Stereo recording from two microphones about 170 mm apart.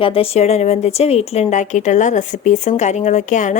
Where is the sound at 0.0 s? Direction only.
35° left (ahead or behind).